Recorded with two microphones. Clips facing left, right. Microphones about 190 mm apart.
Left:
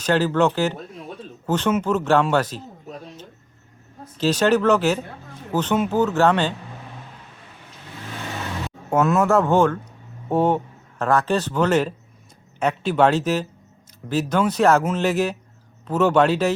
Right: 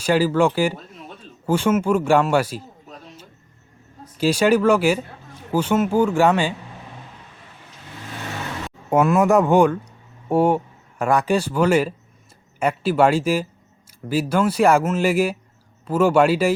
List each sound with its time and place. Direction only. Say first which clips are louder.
0.0 s speech: right 1 dB; 10° right (ahead or behind)
4.2 s speech: right 1 dB; 10° right (ahead or behind)
8.9 s speech: right 2 dB; 10° right (ahead or behind)